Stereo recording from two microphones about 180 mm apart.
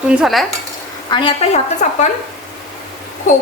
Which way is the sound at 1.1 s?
25° left (ahead or behind).